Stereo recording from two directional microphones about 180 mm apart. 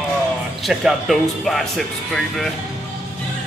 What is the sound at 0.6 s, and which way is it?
Speech, centre (ahead or behind).